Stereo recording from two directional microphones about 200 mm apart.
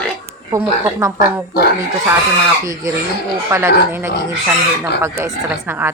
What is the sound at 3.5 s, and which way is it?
Speech, 15° right (ahead or behind).